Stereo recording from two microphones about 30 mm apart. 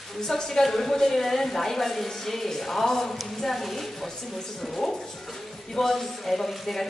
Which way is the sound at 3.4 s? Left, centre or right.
Centre.